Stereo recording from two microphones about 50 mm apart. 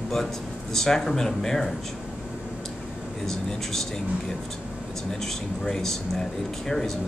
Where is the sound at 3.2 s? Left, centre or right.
Centre.